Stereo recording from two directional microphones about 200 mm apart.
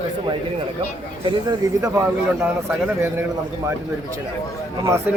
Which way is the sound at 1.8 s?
15° right (ahead or behind).